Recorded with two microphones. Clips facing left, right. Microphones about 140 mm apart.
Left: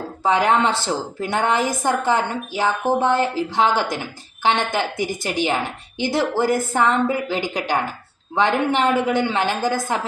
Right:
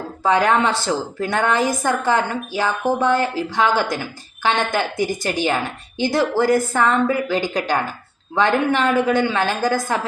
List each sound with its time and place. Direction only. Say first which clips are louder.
0.2 s a woman's voice: right 1 dB; 20° left (ahead or behind)